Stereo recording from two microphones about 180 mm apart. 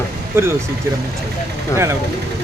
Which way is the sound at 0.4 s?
15° right (ahead or behind).